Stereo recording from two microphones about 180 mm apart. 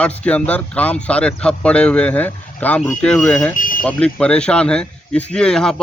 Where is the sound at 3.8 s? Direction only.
5° left (ahead or behind).